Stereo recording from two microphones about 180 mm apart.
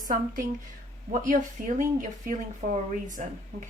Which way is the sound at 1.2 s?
45° right (ahead or behind).